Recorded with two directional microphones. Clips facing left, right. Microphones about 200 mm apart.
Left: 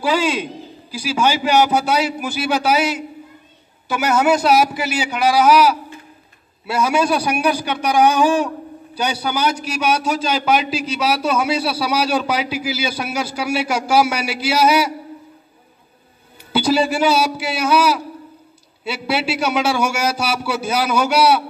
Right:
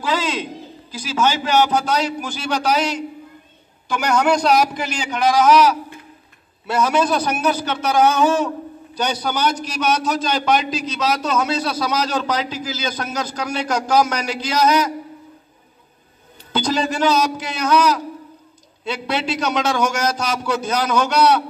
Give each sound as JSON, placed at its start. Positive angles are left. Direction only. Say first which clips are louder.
{"t": 0.0, "sound": "a man's voice", "louder": "left 4 dB", "side_deg": 10}
{"t": 16.5, "sound": "a man's voice", "louder": "left 4 dB", "side_deg": 10}